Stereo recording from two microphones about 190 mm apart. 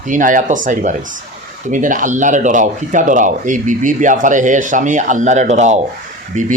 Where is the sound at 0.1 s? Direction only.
45° right (ahead or behind).